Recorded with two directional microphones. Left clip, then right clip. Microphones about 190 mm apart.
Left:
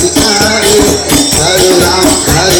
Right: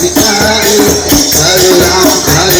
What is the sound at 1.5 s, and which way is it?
Music, 50° right (ahead or behind).